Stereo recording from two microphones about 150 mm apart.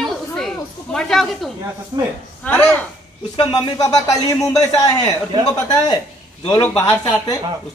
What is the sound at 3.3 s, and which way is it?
Speech, 30° left (ahead or behind).